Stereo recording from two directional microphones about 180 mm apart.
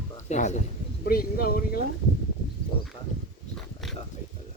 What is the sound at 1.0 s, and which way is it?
Speech, 55° left (ahead or behind).